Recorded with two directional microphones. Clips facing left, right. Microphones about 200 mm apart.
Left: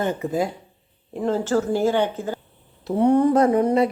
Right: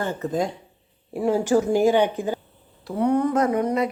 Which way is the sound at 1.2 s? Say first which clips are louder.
Right 2 dB; 15° right (ahead or behind).